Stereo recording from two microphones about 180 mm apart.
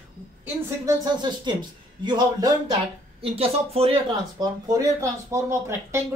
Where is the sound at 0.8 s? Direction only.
25° right (ahead or behind).